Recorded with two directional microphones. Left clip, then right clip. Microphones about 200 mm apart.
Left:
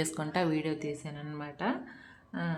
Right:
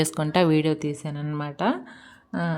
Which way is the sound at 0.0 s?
45° right (ahead or behind).